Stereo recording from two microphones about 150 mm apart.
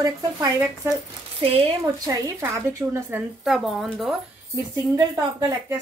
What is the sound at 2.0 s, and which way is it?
Speech, 20° right (ahead or behind).